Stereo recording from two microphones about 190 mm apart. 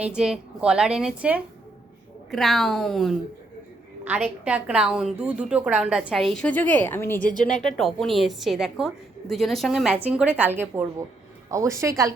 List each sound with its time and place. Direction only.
0.0 s a woman's voice: 5° right (ahead or behind)
4.2 s a woman's voice: 5° right (ahead or behind); by 7.2 s 10° left (ahead or behind)
7.2 s speech: 45° left (ahead or behind)
7.8 s a woman's voice: centre (ahead or behind); by 12.1 s 15° right (ahead or behind)